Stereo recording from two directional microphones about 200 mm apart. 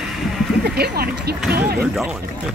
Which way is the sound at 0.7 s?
55° right (ahead or behind).